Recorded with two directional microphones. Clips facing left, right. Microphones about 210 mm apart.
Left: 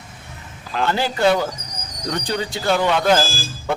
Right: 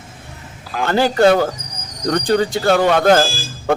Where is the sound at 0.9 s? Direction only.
50° right (ahead or behind).